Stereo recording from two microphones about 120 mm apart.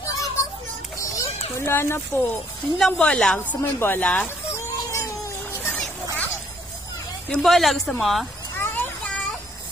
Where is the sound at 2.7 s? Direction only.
5° left (ahead or behind).